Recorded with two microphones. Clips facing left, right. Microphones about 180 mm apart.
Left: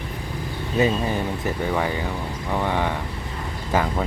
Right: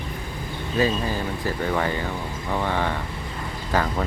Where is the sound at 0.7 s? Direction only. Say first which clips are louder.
Left 2 dB; 20° left (ahead or behind).